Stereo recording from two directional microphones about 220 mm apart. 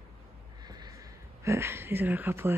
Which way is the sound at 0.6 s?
20° right (ahead or behind).